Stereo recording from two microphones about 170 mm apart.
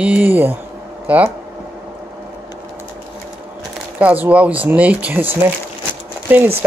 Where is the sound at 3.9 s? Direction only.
10° right (ahead or behind).